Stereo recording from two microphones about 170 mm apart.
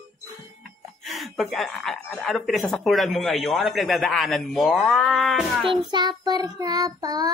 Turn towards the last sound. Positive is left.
turn(degrees=-20)  # may be behind; listen again after turning